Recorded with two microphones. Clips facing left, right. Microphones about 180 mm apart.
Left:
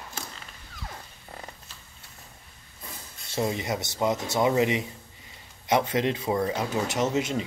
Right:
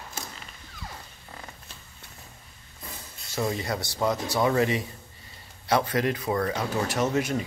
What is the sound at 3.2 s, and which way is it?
Speech, 20° left (ahead or behind).